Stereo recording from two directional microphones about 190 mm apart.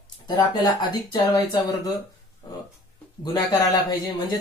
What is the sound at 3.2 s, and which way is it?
A man's voice, 20° left (ahead or behind).